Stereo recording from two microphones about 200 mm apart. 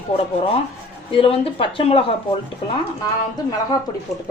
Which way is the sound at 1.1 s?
25° left (ahead or behind).